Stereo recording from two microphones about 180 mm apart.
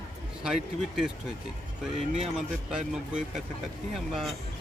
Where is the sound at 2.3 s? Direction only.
5° right (ahead or behind).